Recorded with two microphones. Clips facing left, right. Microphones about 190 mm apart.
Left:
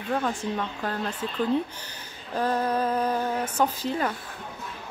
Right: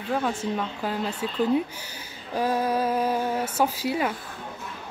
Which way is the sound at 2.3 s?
10° right (ahead or behind).